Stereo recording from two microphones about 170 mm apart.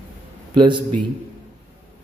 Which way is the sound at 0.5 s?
25° right (ahead or behind).